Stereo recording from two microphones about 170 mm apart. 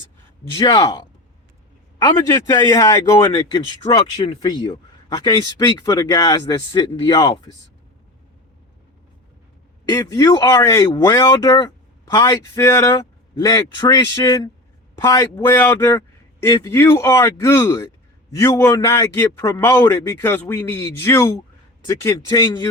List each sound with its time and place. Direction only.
0.5 s speech: 25° left (ahead or behind)
2.0 s speech: 20° left (ahead or behind)
9.9 s a man's voice: 20° left (ahead or behind)